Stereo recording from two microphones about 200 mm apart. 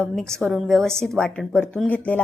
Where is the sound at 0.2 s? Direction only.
5° left (ahead or behind).